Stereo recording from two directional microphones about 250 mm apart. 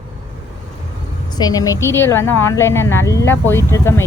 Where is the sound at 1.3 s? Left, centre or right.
Centre.